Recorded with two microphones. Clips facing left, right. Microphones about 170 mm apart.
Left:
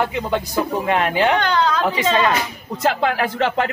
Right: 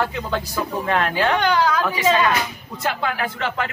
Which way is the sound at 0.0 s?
15° left (ahead or behind).